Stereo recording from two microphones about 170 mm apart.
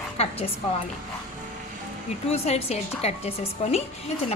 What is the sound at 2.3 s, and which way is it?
A woman's voice, 35° left (ahead or behind).